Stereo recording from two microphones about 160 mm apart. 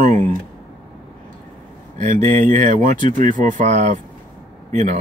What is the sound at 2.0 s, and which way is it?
Speech, 55° right (ahead or behind).